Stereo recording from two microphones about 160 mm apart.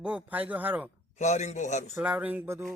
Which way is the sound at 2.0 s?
10° right (ahead or behind).